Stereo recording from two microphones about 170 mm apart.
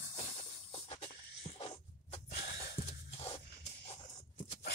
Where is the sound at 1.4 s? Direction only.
30° left (ahead or behind).